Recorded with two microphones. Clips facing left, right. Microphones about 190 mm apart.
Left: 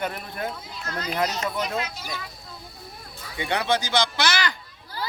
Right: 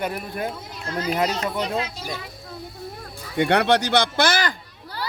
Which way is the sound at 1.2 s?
30° right (ahead or behind).